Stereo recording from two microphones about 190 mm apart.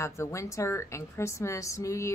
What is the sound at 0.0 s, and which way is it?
A woman's voice, 15° left (ahead or behind).